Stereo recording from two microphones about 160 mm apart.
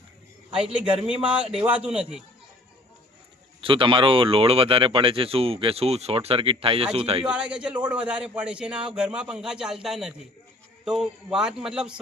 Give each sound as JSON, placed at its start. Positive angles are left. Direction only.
{"t": 0.5, "sound": "a man's voice", "side_deg": -5}
{"t": 3.6, "sound": "speech", "side_deg": -35}
{"t": 7.3, "sound": "a man's voice", "side_deg": -5}